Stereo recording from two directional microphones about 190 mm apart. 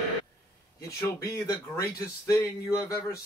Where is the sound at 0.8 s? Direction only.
15° left (ahead or behind).